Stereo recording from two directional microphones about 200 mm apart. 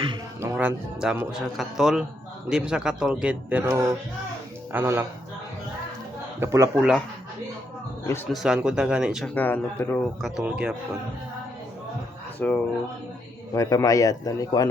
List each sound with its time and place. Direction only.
0.4 s a man's voice: 10° right (ahead or behind)
6.4 s a man's voice: 15° right (ahead or behind)
8.3 s speech: centre (ahead or behind)
12.4 s a man's voice: 10° left (ahead or behind)